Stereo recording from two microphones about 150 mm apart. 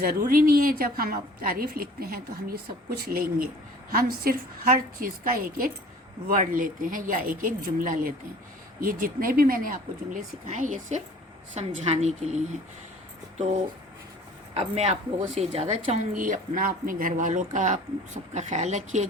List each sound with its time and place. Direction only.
0.0 s a woman's voice: 70° right (ahead or behind)
10.4 s a woman's voice: 60° right (ahead or behind); by 16.0 s 40° right (ahead or behind)
16.1 s speech: 60° right (ahead or behind)